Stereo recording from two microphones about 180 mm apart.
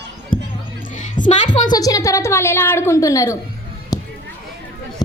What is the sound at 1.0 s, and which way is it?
Speech, 45° left (ahead or behind).